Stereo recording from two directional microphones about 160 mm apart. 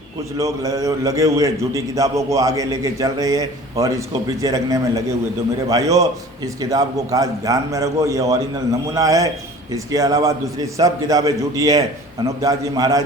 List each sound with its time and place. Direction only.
0.3 s a man's voice: 20° right (ahead or behind)